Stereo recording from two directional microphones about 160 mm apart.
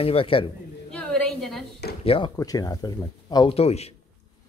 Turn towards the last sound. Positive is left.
turn(degrees=40)  # may be behind; listen again after turning